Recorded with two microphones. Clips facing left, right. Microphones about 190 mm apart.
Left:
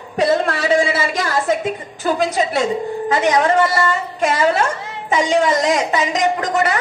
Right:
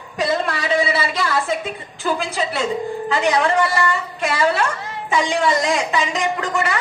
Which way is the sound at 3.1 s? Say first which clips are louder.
Left 3 dB; 40° left (ahead or behind).